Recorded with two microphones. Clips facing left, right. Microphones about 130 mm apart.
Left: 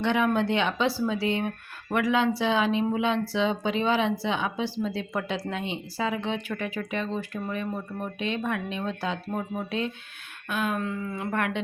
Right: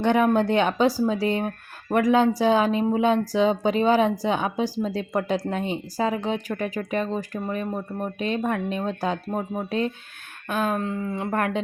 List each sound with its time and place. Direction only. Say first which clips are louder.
0.0 s a woman's voice: right 4 dB; 45° right (ahead or behind)